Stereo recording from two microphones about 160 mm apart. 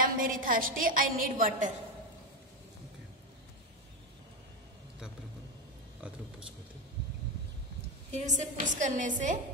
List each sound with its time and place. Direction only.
0.0 s a woman's voice: 60° right (ahead or behind)
8.1 s a woman's voice: 50° right (ahead or behind)